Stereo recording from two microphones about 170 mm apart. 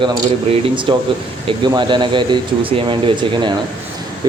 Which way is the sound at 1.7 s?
30° right (ahead or behind).